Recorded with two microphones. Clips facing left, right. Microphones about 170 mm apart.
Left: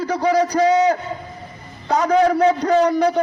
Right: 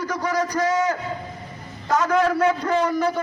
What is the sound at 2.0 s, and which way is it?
Speech, 35° left (ahead or behind).